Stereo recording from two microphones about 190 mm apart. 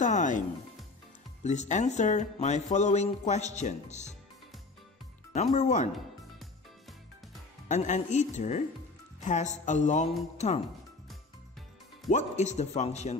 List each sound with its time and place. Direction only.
0.0 s music: 40° left (ahead or behind)
1.4 s speech: 40° left (ahead or behind)
5.3 s speech: 35° left (ahead or behind)
7.6 s speech: 40° left (ahead or behind)
12.1 s speech: 40° left (ahead or behind)